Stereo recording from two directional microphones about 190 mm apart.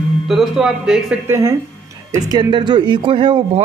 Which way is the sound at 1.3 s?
15° right (ahead or behind).